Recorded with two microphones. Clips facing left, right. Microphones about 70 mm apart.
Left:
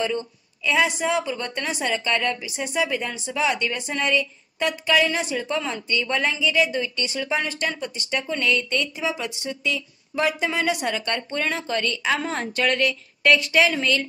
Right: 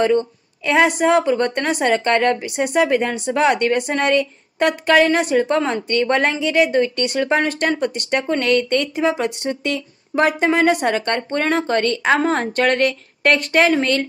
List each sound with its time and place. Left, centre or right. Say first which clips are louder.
0.7 s a woman's voice: right 7 dB; right